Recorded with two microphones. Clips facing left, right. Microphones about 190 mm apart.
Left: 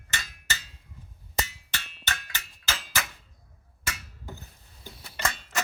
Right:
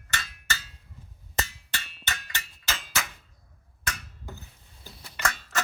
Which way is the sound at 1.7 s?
Centre (ahead or behind).